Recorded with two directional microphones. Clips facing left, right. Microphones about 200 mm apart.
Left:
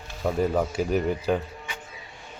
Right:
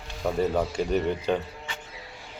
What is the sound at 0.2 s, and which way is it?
Speech, centre (ahead or behind).